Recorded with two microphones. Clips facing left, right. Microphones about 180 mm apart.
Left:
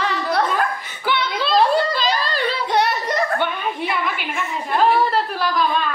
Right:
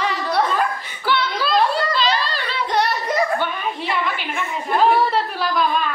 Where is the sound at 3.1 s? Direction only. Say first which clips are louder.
Right 1 dB; 10° right (ahead or behind).